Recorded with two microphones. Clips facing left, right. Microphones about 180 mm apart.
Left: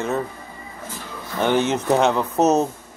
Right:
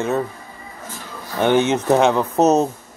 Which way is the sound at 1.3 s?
15° right (ahead or behind).